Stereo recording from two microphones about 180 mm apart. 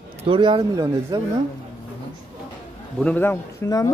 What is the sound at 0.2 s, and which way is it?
Speech, 25° right (ahead or behind).